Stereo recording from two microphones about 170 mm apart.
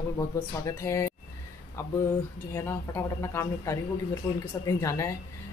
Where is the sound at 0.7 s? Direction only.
20° left (ahead or behind).